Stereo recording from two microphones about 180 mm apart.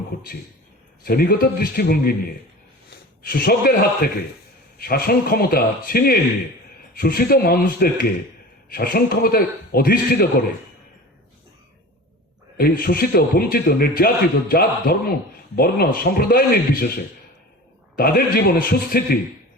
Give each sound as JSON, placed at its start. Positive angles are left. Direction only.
{"t": 1.0, "sound": "a man's voice", "side_deg": 55}
{"t": 12.5, "sound": "a man's voice", "side_deg": 55}
{"t": 17.9, "sound": "a man's voice", "side_deg": 55}